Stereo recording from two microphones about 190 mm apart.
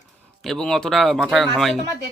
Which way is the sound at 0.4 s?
5° left (ahead or behind).